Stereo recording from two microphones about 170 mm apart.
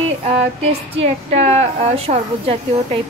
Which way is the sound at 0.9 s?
40° right (ahead or behind).